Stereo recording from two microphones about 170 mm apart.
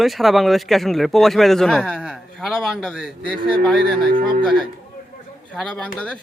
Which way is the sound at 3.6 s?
5° left (ahead or behind).